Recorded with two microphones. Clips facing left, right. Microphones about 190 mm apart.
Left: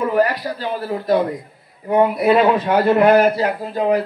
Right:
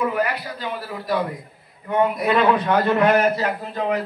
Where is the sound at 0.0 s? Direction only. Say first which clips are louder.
Left 5 dB; 35° left (ahead or behind).